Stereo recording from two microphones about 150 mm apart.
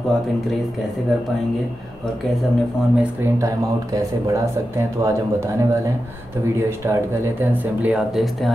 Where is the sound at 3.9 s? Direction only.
20° right (ahead or behind).